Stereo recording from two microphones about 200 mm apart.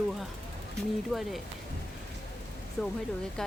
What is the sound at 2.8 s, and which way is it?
Speech, centre (ahead or behind).